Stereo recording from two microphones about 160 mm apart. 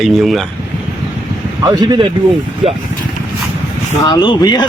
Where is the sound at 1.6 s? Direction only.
25° right (ahead or behind).